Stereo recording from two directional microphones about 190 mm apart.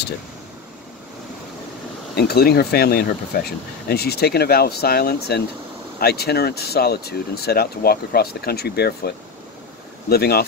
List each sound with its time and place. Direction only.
2.1 s speech: 55° left (ahead or behind)